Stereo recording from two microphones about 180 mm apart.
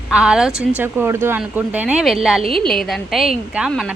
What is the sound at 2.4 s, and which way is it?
Speech, 30° right (ahead or behind).